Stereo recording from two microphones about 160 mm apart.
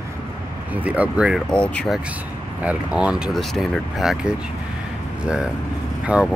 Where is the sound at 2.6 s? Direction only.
5° right (ahead or behind).